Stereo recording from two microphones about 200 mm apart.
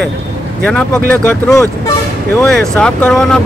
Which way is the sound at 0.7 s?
5° left (ahead or behind).